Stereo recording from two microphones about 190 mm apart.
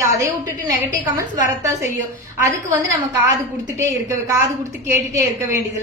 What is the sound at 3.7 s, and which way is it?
Speech, 15° right (ahead or behind).